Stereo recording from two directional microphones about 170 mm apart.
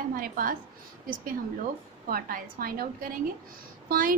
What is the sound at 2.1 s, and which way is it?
A woman's voice, 55° right (ahead or behind).